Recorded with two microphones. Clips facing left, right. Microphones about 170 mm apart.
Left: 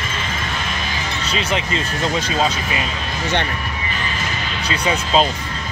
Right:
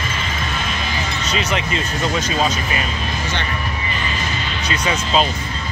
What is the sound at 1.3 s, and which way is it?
Music, 30° left (ahead or behind).